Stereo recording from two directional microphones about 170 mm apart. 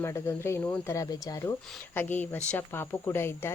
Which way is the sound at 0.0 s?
15° left (ahead or behind).